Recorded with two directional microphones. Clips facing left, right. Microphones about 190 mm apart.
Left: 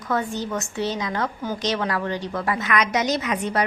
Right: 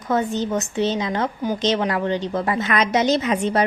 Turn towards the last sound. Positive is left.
turn(degrees=-25)  # may be behind; listen again after turning